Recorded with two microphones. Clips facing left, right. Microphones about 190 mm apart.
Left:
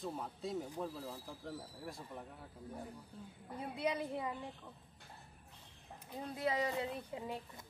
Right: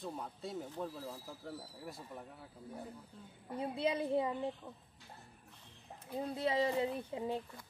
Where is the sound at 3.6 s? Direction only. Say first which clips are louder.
Right 3 dB; 25° right (ahead or behind).